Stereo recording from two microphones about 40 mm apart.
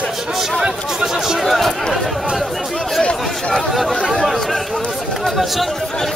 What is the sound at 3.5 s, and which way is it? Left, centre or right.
Speech, centre.